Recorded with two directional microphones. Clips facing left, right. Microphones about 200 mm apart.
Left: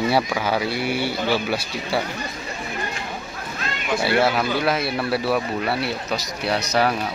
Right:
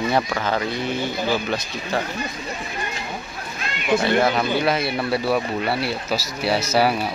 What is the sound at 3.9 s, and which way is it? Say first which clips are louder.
A man's voice: right 1 dB; 10° left (ahead or behind).